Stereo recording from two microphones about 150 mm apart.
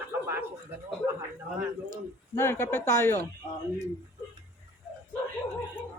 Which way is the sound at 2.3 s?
15° left (ahead or behind).